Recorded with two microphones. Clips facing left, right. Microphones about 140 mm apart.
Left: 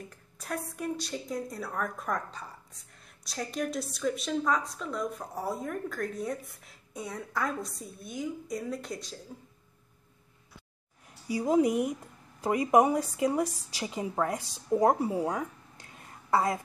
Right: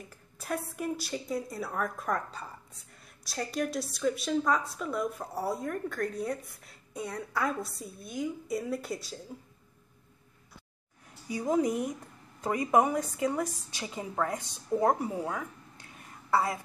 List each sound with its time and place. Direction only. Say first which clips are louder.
0.1 s a woman's voice: right 3 dB; 5° right (ahead or behind)
11.5 s a woman's voice: left 3 dB; 15° left (ahead or behind)